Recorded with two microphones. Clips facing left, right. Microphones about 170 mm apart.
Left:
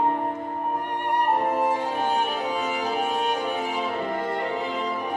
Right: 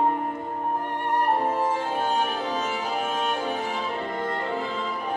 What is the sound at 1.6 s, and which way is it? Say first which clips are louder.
Music: left 1 dB; 15° left (ahead or behind).